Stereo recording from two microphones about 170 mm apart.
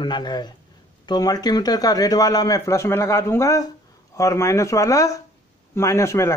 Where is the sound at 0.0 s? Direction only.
25° left (ahead or behind).